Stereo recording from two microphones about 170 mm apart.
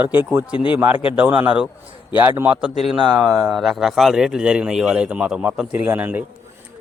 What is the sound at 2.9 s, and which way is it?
Speech, 25° right (ahead or behind).